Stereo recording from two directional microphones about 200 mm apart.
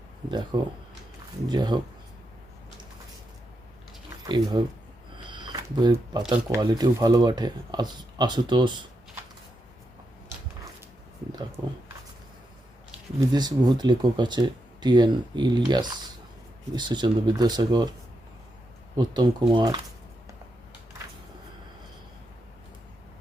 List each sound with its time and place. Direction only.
0.3 s speech: 20° right (ahead or behind)
5.3 s camera: 25° right (ahead or behind)
6.5 s speech: 20° right (ahead or behind)
13.1 s speech: 20° right (ahead or behind)
18.9 s speech: 20° right (ahead or behind)